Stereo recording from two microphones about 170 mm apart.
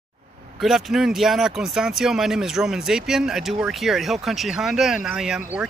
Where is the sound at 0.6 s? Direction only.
Centre (ahead or behind).